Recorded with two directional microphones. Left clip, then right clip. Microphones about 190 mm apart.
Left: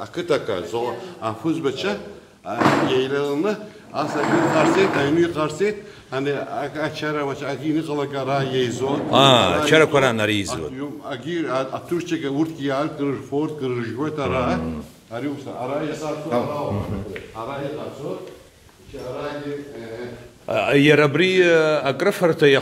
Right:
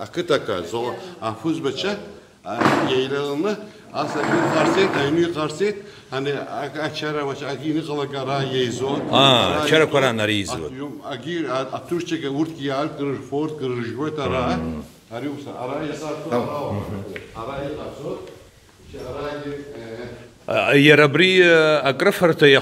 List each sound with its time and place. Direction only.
0.0 s speech: 55° right (ahead or behind)
1.2 s a man's voice: 10° right (ahead or behind)
20.4 s speech: 15° right (ahead or behind)